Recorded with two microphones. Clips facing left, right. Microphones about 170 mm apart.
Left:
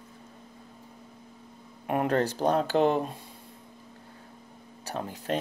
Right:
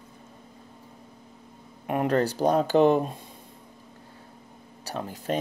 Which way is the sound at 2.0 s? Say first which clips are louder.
Right 2 dB; 35° right (ahead or behind).